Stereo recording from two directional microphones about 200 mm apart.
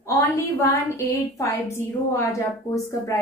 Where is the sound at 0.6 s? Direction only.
15° left (ahead or behind).